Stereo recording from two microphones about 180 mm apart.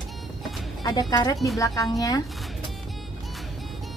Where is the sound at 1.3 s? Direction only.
Centre (ahead or behind).